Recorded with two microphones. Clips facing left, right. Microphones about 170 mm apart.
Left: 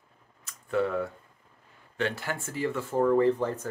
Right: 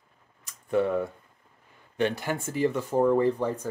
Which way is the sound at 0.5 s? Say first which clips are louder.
Right 3 dB; 20° right (ahead or behind).